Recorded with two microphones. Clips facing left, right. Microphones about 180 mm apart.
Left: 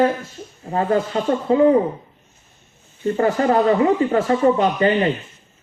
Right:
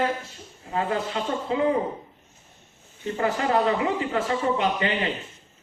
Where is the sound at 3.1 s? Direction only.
40° left (ahead or behind).